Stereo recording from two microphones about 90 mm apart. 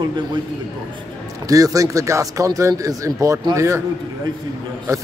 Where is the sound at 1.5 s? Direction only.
40° right (ahead or behind).